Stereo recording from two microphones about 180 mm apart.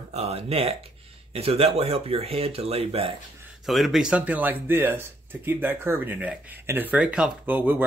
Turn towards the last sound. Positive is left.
turn(degrees=-10)  # may be behind; listen again after turning